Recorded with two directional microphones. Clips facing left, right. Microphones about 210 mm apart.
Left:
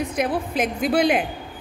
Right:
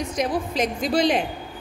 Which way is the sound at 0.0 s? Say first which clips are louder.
Left 1 dB; 55° left (ahead or behind).